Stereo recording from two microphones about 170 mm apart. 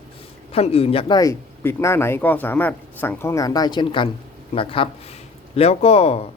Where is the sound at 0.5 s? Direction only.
35° left (ahead or behind).